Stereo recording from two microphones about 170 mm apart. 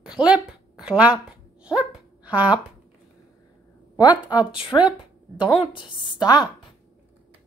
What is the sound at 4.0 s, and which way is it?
A woman's voice, 20° left (ahead or behind).